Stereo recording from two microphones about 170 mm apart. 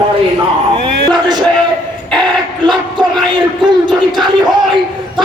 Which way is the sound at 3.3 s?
25° right (ahead or behind).